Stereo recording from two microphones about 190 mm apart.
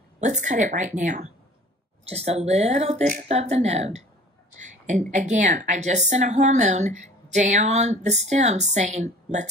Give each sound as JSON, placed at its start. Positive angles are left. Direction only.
{"t": 0.2, "sound": "a woman's voice", "side_deg": -40}